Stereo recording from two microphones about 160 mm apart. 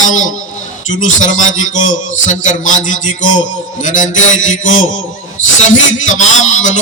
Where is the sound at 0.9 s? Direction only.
50° left (ahead or behind).